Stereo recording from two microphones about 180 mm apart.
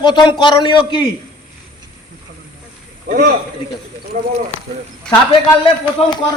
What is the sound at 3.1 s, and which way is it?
Speech, 50° right (ahead or behind).